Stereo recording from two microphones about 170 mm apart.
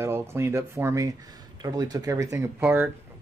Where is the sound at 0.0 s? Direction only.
15° right (ahead or behind).